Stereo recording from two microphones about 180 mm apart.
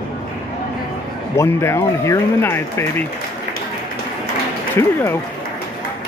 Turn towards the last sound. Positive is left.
turn(degrees=15)  # may be behind; listen again after turning